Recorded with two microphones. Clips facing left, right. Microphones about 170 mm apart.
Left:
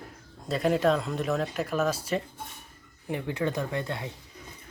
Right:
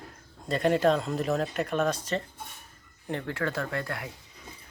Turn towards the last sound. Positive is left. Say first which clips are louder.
# left 1 dB
turn(degrees=25)  # may be behind; listen again after turning